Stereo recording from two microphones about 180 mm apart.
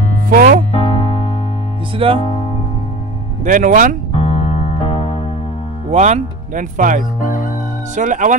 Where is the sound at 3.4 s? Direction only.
45° right (ahead or behind).